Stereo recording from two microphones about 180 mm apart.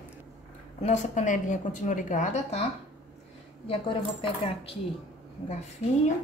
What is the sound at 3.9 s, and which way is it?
Speech, 30° left (ahead or behind).